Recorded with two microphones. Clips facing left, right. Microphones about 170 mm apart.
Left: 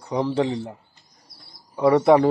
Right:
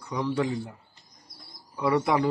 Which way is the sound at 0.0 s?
30° left (ahead or behind).